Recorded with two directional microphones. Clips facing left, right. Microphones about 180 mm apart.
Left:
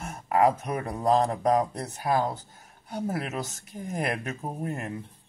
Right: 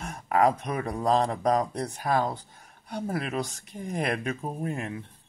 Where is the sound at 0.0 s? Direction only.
5° left (ahead or behind).